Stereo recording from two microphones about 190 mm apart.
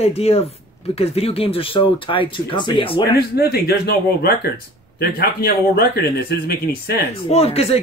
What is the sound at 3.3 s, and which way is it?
Speech, 55° left (ahead or behind).